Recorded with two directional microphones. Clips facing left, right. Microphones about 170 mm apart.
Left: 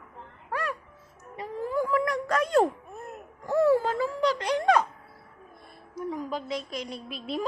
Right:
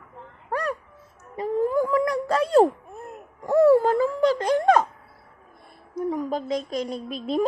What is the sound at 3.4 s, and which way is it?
A woman's voice, 60° right (ahead or behind).